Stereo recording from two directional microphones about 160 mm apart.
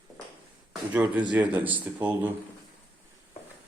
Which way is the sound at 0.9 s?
10° right (ahead or behind).